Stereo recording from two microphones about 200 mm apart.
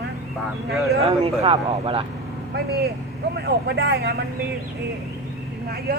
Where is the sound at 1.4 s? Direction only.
25° right (ahead or behind).